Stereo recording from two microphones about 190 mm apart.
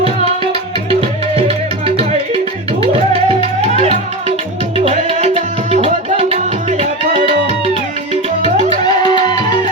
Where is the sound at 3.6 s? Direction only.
35° right (ahead or behind).